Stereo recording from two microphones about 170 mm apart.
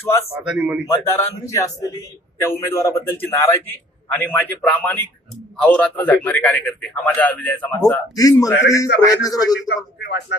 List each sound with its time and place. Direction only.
0.0 s a man's voice: 15° left (ahead or behind)
0.4 s speech: 10° right (ahead or behind)
0.9 s a man's voice: 15° left (ahead or behind)
9.6 s speech: 80° left